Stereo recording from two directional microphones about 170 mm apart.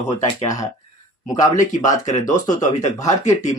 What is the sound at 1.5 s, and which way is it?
Speech, 45° left (ahead or behind).